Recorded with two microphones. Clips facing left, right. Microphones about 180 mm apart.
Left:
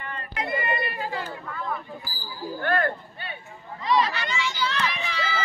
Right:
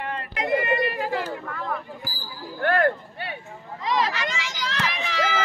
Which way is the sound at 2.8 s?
90° right.